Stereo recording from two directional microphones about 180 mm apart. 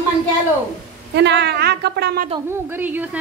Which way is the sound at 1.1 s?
75° right (ahead or behind).